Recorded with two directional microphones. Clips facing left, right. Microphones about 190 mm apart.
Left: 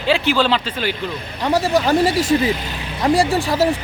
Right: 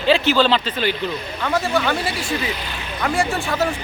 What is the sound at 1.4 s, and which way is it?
Speech, 35° left (ahead or behind).